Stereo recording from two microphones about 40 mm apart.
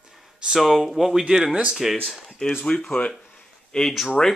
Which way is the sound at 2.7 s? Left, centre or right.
Left.